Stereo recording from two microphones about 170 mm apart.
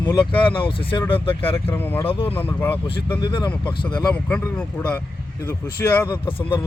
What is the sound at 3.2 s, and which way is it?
Speech, 30° left (ahead or behind).